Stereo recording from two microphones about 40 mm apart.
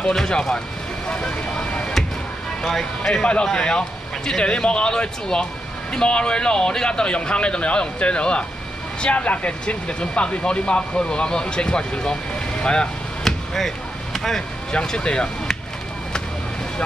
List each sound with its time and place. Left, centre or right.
0.1 s speech: centre
2.6 s speech: centre
13.2 s basketball bounce: centre
14.7 s speech: left